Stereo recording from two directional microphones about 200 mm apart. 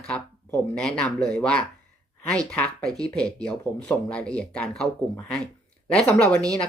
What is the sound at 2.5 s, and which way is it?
Speech, 5° left (ahead or behind).